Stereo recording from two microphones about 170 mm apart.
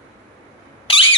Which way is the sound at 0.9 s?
30° left (ahead or behind).